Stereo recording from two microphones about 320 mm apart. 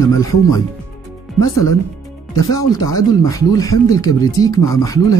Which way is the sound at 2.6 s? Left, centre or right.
Centre.